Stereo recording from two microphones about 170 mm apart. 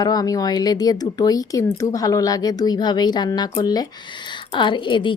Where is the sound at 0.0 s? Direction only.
20° left (ahead or behind).